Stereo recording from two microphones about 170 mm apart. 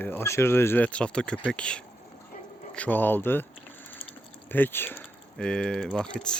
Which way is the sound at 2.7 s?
10° left (ahead or behind).